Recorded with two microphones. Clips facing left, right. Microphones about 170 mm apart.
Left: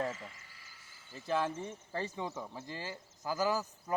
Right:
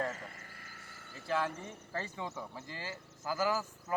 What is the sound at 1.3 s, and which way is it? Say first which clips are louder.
Speech: left 1 dB; 20° left (ahead or behind).